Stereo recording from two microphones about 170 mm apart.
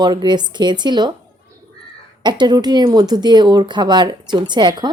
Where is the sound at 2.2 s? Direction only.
25° right (ahead or behind).